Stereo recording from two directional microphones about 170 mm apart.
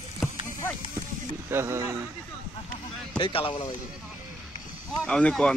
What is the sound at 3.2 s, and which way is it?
Speech, 30° left (ahead or behind).